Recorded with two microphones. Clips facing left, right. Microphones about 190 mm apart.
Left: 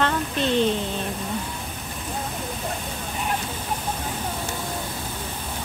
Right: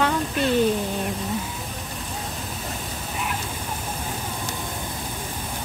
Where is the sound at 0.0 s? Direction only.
10° right (ahead or behind).